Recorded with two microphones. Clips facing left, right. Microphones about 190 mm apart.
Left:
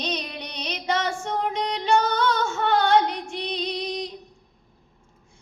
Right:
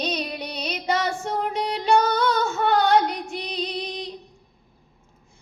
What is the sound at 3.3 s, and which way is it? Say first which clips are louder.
Music: even; 5° right (ahead or behind).